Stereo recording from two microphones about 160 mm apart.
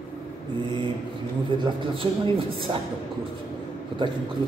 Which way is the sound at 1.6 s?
30° right (ahead or behind).